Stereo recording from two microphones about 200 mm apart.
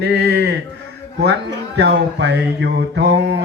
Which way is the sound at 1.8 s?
55° right (ahead or behind).